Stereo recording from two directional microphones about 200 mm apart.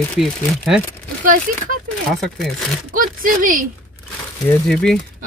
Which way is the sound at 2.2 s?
Centre (ahead or behind).